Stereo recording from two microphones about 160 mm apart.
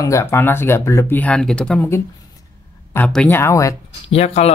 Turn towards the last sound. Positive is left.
turn(degrees=40)  # may be behind; listen again after turning